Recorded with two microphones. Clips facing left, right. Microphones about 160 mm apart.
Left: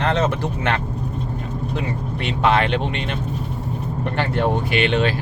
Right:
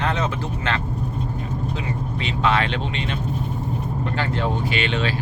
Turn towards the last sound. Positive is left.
turn(degrees=55)  # may be behind; listen again after turning